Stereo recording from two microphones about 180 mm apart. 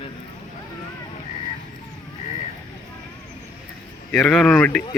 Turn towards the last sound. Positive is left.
turn(degrees=5)  # may be behind; listen again after turning